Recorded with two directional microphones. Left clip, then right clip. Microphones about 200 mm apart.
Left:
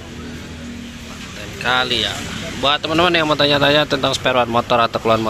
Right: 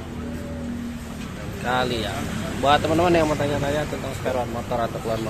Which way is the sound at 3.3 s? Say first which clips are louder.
Left 10 dB; 20° left (ahead or behind).